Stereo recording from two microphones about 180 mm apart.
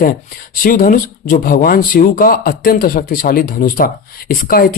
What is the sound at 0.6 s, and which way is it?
Speech, 50° left (ahead or behind).